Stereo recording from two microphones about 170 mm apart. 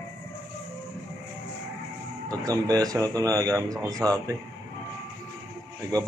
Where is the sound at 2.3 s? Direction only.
20° right (ahead or behind).